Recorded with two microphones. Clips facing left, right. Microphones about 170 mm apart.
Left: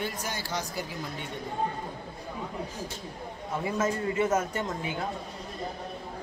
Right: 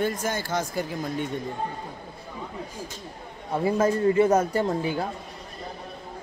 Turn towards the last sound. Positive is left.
turn(degrees=-35)  # may be behind; listen again after turning